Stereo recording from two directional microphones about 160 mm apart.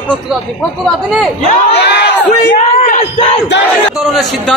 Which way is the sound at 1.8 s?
90° left.